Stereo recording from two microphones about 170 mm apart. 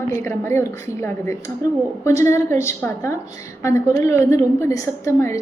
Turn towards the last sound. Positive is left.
turn(degrees=15)  # may be behind; listen again after turning